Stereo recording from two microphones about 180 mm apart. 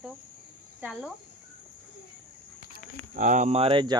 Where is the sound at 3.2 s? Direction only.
45° right (ahead or behind); by 3.9 s 30° right (ahead or behind).